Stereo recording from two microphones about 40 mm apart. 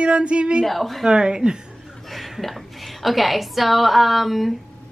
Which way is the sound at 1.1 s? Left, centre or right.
Centre.